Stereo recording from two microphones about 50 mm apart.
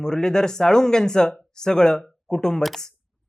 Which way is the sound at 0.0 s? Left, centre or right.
Centre.